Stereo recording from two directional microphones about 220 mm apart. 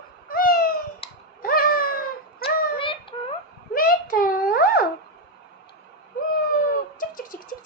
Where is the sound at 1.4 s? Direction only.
40° left (ahead or behind).